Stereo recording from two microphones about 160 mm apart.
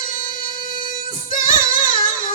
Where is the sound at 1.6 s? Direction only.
60° left (ahead or behind).